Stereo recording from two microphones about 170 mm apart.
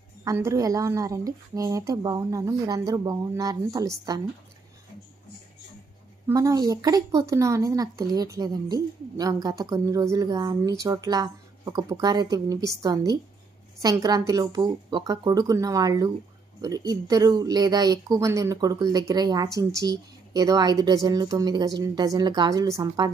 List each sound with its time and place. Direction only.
0.2 s speech: 15° right (ahead or behind)
6.2 s speech: 20° right (ahead or behind)